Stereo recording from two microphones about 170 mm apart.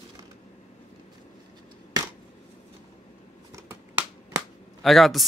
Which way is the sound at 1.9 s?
25° right (ahead or behind).